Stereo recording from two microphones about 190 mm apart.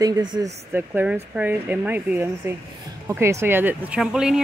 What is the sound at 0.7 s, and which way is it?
Speech, 10° right (ahead or behind).